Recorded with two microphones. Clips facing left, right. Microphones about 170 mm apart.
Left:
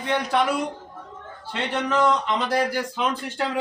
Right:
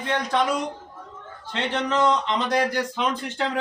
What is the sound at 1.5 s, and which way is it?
A man's voice, 5° left (ahead or behind).